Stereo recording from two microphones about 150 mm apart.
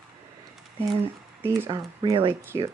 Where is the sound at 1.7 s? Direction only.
30° right (ahead or behind).